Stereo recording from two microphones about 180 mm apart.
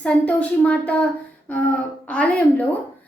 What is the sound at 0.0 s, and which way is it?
Speech, 5° left (ahead or behind).